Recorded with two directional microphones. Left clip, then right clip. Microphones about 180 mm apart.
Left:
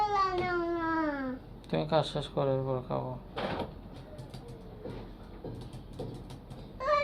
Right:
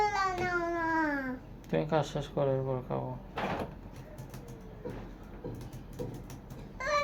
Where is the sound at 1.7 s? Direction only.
5° right (ahead or behind).